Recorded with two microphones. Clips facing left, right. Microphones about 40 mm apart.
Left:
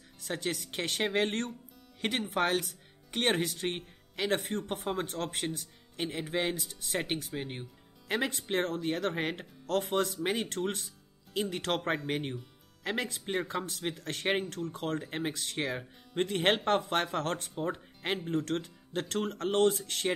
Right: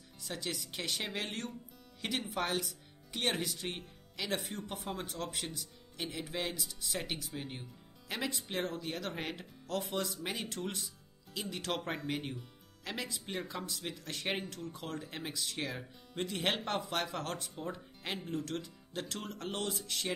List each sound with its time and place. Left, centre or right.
0.2 s speech: left
8.1 s speech: left